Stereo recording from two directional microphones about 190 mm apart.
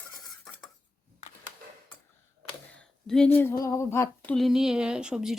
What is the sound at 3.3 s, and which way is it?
A woman's voice, 15° left (ahead or behind).